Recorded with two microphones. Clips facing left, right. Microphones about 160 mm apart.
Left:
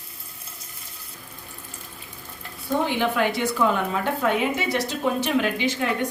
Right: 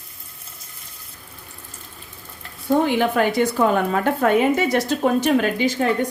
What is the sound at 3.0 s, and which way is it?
Speech, 45° right (ahead or behind).